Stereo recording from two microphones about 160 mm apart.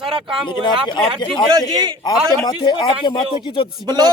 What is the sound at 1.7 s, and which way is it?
Speech, 25° right (ahead or behind).